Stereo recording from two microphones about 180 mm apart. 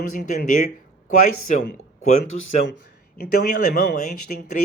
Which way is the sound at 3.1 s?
55° left (ahead or behind).